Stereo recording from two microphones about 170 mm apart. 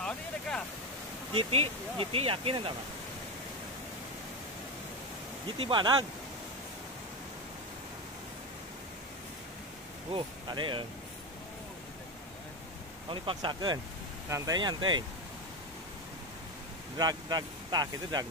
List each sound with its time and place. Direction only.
1.3 s speech: 35° right (ahead or behind)
5.6 s speech: 30° right (ahead or behind)
10.1 s speech: 30° right (ahead or behind)
13.1 s speech: 30° right (ahead or behind)
17.0 s speech: 25° right (ahead or behind)